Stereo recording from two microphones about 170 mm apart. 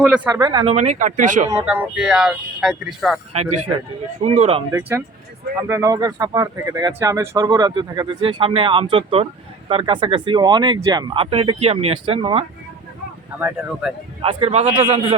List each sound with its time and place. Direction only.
0.3 s speech: 20° right (ahead or behind)
0.6 s speech: 40° right (ahead or behind)
1.5 s speech: 10° right (ahead or behind)
3.3 s speech: 40° right (ahead or behind)
4.7 s speech: 15° right (ahead or behind)
11.1 s speech: 35° right (ahead or behind)
13.4 s speech: 5° right (ahead or behind)
14.2 s speech: 30° right (ahead or behind)